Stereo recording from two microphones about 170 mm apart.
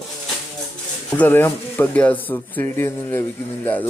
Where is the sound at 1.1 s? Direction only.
10° left (ahead or behind).